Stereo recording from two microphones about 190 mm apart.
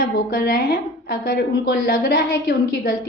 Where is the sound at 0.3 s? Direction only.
55° left (ahead or behind).